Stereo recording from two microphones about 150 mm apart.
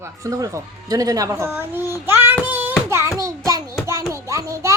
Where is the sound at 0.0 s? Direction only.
20° right (ahead or behind).